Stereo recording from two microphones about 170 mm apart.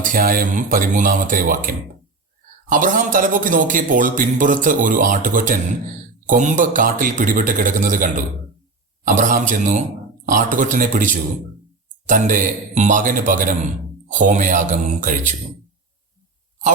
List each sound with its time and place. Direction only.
0.0 s a man's voice: 55° right (ahead or behind)